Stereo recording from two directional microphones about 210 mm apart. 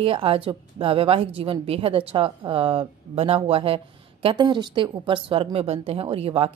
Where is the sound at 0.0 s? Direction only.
25° right (ahead or behind).